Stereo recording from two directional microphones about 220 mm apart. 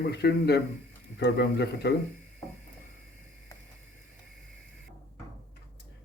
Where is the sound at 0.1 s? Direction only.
50° left (ahead or behind).